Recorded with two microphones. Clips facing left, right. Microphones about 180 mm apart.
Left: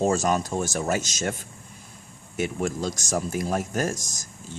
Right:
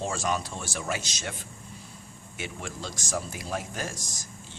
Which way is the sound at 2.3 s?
45° left (ahead or behind).